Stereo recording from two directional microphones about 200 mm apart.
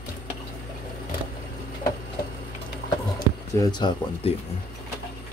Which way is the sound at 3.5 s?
20° left (ahead or behind).